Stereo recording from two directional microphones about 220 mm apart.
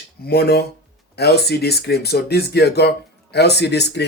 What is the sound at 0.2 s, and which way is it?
Speech, 45° left (ahead or behind).